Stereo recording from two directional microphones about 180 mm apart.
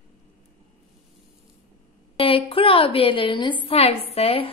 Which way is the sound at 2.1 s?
30° left (ahead or behind).